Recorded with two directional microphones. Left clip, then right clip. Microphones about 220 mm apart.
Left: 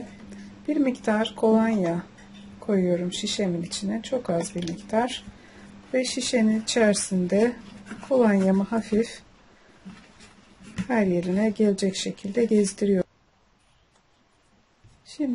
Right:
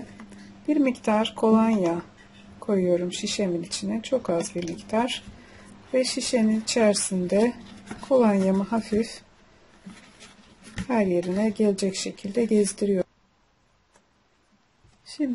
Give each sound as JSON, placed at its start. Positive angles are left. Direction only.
{"t": 0.7, "sound": "speech", "side_deg": 0}
{"t": 10.9, "sound": "speech", "side_deg": 0}